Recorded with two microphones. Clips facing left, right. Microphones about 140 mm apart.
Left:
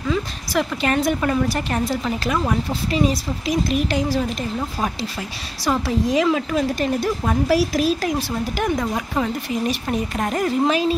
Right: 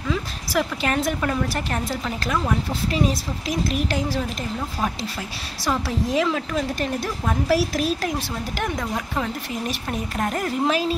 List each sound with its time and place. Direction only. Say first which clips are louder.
0.1 s a woman's voice: left 2 dB; centre (ahead or behind)